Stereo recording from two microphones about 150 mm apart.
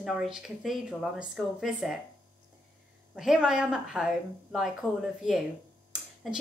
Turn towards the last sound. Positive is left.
turn(degrees=0)  # may be behind; listen again after turning